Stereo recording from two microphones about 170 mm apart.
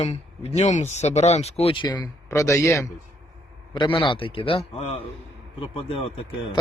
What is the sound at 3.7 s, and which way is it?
A man's voice, 30° left (ahead or behind).